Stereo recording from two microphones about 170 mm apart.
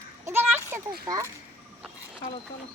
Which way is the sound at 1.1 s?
20° right (ahead or behind).